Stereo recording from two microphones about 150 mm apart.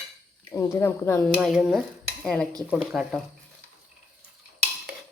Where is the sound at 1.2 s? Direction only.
Centre (ahead or behind).